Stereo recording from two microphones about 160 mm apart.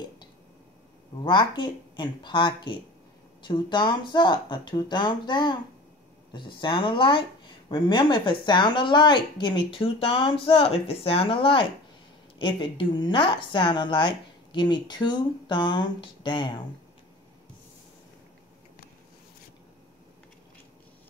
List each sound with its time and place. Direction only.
1.2 s a woman's voice: 30° left (ahead or behind)